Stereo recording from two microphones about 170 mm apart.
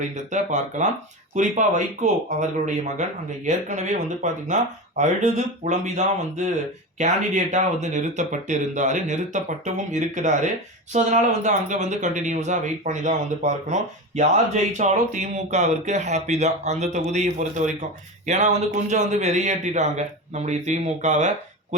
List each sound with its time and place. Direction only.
0.3 s speech: 45° right (ahead or behind)